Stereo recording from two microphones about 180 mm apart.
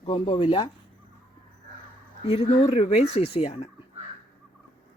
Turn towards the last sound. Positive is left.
turn(degrees=35)  # may be behind; listen again after turning